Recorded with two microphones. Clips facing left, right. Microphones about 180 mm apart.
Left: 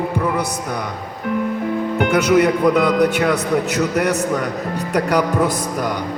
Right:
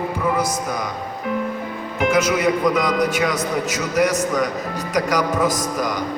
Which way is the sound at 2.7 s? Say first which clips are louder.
Left 4 dB; 60° left (ahead or behind).